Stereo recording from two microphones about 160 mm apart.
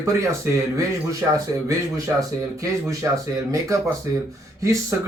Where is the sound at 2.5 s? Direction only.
20° right (ahead or behind).